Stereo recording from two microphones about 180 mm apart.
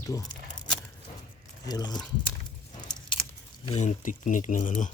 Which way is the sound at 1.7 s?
20° left (ahead or behind).